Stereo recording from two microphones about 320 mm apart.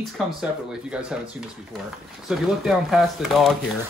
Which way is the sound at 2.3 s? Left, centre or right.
Centre.